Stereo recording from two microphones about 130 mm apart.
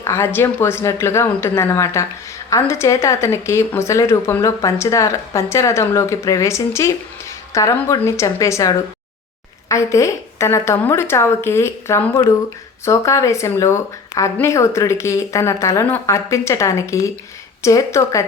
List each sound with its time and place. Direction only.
0.0 s speech: 20° left (ahead or behind)